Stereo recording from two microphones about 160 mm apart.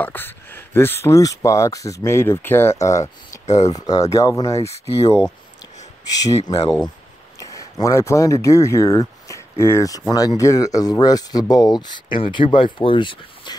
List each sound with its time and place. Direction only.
0.0 s speech: 15° left (ahead or behind)
3.4 s speech: 45° left (ahead or behind)
3.8 s speech: 20° left (ahead or behind)
6.0 s speech: 25° left (ahead or behind)
7.8 s speech: 20° left (ahead or behind)